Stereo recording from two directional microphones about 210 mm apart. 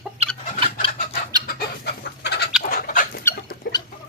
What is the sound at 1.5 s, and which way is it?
Chicken, 50° left (ahead or behind).